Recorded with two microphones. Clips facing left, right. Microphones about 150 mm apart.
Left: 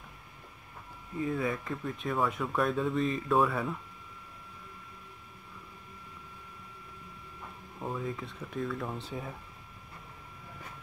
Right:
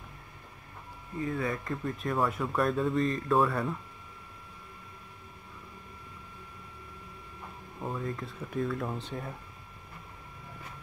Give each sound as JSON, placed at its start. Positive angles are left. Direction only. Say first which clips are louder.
{"t": 1.2, "sound": "speech", "louder": "left 1 dB", "side_deg": 5}
{"t": 7.8, "sound": "speech", "louder": "right 1 dB", "side_deg": 0}